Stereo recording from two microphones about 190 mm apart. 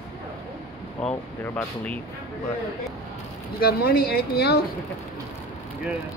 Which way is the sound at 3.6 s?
55° left (ahead or behind).